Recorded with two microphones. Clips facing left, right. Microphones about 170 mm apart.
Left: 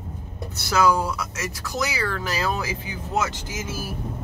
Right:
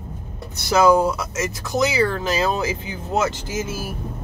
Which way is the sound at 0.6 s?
20° right (ahead or behind).